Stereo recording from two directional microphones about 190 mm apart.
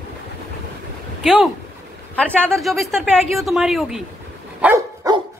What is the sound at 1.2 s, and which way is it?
A woman's voice, centre (ahead or behind).